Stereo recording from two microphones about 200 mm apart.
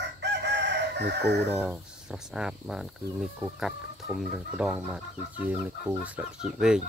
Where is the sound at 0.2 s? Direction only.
60° right (ahead or behind).